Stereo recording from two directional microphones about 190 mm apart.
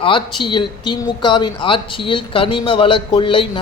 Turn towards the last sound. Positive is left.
turn(degrees=25)  # may be behind; listen again after turning